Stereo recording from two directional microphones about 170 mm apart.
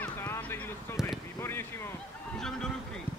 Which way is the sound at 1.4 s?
15° left (ahead or behind).